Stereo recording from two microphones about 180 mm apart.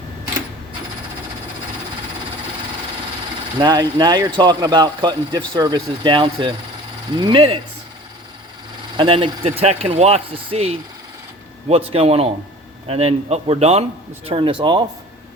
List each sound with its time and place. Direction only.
3.6 s speech: 25° right (ahead or behind)
9.0 s speech: 30° right (ahead or behind)
11.9 s speech: 35° right (ahead or behind)